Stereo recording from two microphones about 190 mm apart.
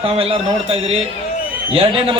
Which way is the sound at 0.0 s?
30° right (ahead or behind).